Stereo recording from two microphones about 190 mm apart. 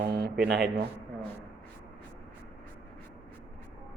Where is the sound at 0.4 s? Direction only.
60° right (ahead or behind).